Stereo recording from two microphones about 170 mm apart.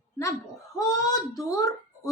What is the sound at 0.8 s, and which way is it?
Speech, 20° left (ahead or behind).